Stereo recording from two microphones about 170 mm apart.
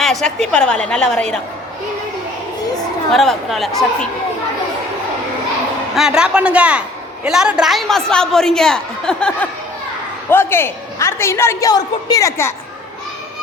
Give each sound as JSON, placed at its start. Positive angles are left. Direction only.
{"t": 0.0, "sound": "a woman's voice", "side_deg": 0}
{"t": 3.1, "sound": "a woman's voice", "side_deg": 0}
{"t": 5.9, "sound": "a woman's voice", "side_deg": -5}